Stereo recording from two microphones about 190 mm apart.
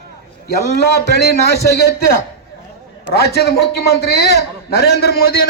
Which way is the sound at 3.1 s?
60° left (ahead or behind).